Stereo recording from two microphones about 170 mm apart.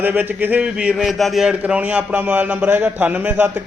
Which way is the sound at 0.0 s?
10° right (ahead or behind).